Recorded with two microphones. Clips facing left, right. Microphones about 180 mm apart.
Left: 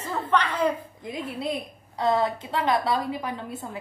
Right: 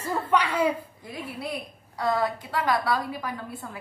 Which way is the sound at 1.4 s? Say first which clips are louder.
Left 4 dB; 20° left (ahead or behind).